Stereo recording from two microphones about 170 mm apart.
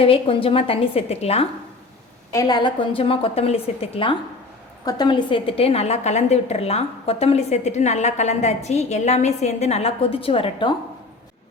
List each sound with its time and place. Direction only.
0.0 s a woman's voice: 35° left (ahead or behind)
2.3 s a woman's voice: 20° left (ahead or behind)